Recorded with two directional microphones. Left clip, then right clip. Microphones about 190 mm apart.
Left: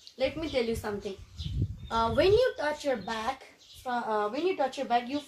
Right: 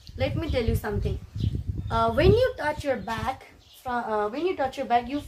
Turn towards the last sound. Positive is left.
turn(degrees=0)  # may be behind; listen again after turning